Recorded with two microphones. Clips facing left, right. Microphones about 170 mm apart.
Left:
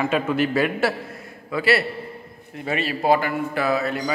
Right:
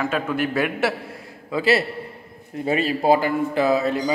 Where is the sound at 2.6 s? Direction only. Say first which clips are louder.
Right 3 dB; 30° right (ahead or behind).